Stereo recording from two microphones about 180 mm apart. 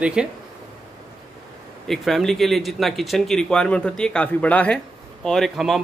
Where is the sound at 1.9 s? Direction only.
Centre (ahead or behind).